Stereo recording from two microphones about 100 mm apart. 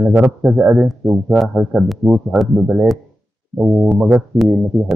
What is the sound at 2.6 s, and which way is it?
Speech, 20° right (ahead or behind).